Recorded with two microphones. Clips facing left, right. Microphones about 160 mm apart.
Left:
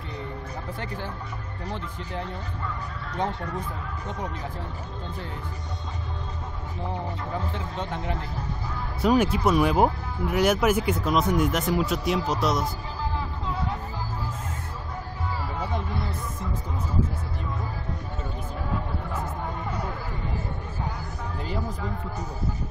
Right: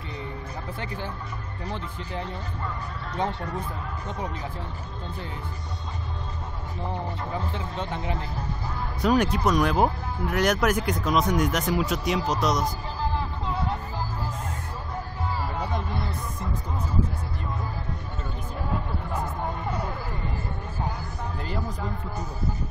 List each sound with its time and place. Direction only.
3.2 s speech: 30° right (ahead or behind)
9.0 s speech: 5° left (ahead or behind)